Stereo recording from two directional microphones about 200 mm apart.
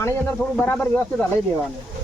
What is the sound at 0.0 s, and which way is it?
Speech, 10° left (ahead or behind).